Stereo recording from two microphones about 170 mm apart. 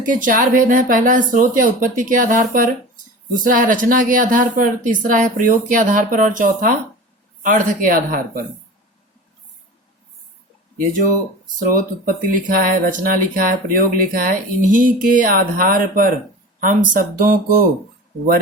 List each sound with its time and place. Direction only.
0.0 s a woman's voice: 50° right (ahead or behind)
11.7 s speech: 55° right (ahead or behind)